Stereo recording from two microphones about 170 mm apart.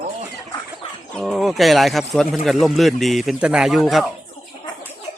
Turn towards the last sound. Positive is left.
turn(degrees=0)  # may be behind; listen again after turning